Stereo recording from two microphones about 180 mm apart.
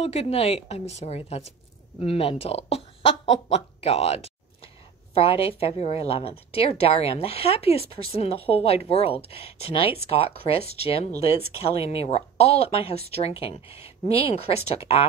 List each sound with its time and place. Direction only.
0.0 s speech: 35° left (ahead or behind)